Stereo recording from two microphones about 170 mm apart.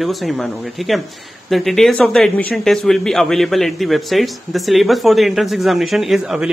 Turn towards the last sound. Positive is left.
turn(degrees=0)  # may be behind; listen again after turning